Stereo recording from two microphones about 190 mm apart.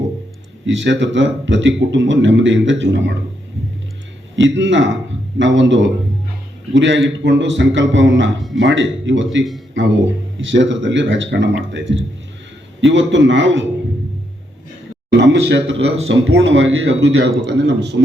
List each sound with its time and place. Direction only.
0.6 s a man's voice: 75° right (ahead or behind)
4.4 s a man's voice: 75° right (ahead or behind)
10.4 s a man's voice: 75° right (ahead or behind)
12.8 s a man's voice: 75° right (ahead or behind)
15.1 s speech: 70° right (ahead or behind)
17.4 s a man's voice: 65° right (ahead or behind)